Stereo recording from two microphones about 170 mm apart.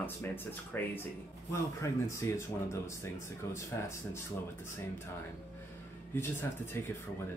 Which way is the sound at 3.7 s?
15° left (ahead or behind).